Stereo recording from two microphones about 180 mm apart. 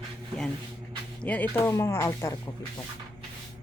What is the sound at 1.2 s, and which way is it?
Speech, 10° left (ahead or behind).